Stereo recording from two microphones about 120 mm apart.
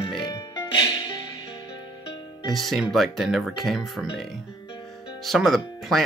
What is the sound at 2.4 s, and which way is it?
Speech, centre (ahead or behind).